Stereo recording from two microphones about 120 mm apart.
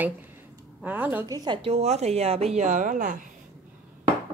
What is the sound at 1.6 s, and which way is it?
Speech, 60° right (ahead or behind).